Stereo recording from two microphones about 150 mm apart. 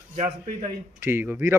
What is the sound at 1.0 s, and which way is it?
Speech, 15° right (ahead or behind).